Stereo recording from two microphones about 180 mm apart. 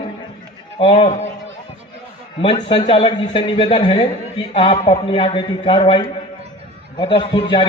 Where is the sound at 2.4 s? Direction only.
30° left (ahead or behind).